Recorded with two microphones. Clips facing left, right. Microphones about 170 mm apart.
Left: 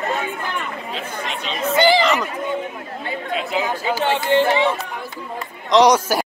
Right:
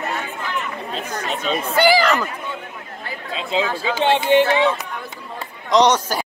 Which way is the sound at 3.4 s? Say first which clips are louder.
Right 3 dB; 25° right (ahead or behind).